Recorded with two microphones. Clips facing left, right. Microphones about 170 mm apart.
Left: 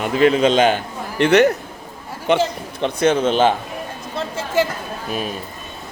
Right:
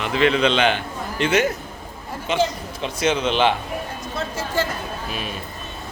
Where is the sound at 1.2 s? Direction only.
65° left (ahead or behind); by 3.5 s 45° left (ahead or behind).